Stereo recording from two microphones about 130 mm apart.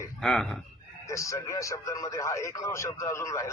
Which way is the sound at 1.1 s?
25° left (ahead or behind).